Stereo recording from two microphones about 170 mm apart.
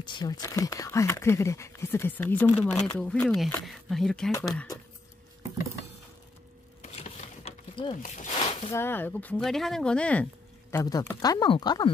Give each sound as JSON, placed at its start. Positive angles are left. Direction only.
{"t": 0.0, "sound": "speech", "side_deg": 25}
{"t": 4.3, "sound": "speech", "side_deg": 15}
{"t": 6.8, "sound": "a sound", "side_deg": 40}
{"t": 8.7, "sound": "speech", "side_deg": 10}
{"t": 10.7, "sound": "speech", "side_deg": 20}